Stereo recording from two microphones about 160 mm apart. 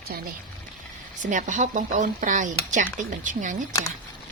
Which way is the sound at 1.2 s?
50° right (ahead or behind).